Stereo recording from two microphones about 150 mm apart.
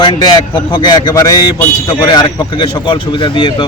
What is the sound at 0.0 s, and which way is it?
A man's voice, 30° left (ahead or behind).